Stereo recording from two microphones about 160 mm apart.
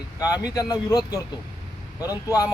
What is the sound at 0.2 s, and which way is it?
Speech, 25° left (ahead or behind).